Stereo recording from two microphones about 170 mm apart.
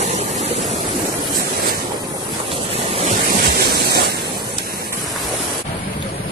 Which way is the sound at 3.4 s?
65° right (ahead or behind).